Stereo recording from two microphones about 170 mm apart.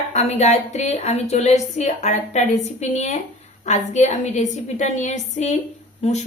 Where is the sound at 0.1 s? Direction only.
40° left (ahead or behind).